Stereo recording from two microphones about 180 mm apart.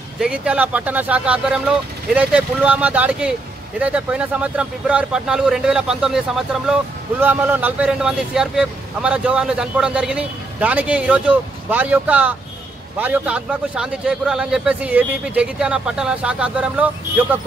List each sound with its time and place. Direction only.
0.2 s speech: 5° right (ahead or behind)